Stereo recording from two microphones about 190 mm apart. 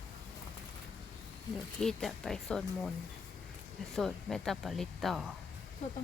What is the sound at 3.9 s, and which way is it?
Speech, centre (ahead or behind).